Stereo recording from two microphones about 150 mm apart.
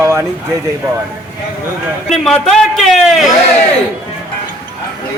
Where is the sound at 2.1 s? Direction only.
Centre (ahead or behind).